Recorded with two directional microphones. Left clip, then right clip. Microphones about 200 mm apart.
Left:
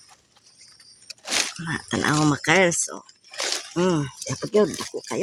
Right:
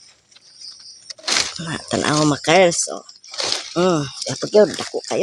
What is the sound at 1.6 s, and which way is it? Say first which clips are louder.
Speech: right 3 dB; 20° left (ahead or behind).